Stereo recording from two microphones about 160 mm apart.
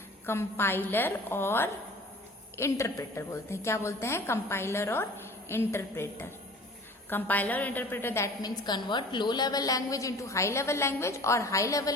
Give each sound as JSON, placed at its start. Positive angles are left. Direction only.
{"t": 0.3, "sound": "a woman's voice", "side_deg": 15}
{"t": 7.1, "sound": "a woman's voice", "side_deg": 10}